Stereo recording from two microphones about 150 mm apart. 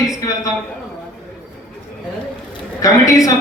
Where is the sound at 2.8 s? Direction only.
20° left (ahead or behind).